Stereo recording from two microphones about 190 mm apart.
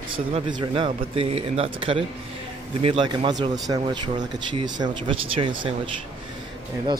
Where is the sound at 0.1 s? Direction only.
25° right (ahead or behind).